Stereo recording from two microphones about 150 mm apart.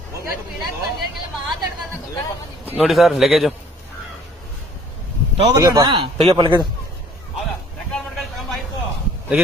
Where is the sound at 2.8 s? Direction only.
Centre (ahead or behind).